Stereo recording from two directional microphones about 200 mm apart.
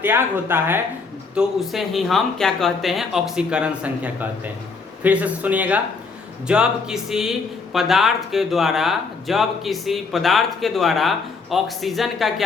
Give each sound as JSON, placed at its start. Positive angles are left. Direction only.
{"t": 0.0, "sound": "speech", "side_deg": -10}